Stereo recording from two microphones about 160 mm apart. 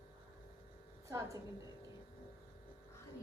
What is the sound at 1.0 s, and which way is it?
Buzz, 20° right (ahead or behind).